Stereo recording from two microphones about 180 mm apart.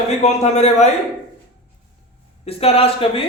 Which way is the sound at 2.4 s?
35° left (ahead or behind).